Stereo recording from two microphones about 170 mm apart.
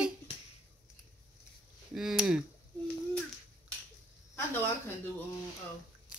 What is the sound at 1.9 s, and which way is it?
Speech, centre (ahead or behind).